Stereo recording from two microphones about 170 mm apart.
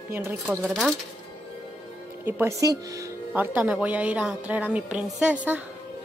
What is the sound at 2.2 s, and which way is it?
Speech, 15° right (ahead or behind).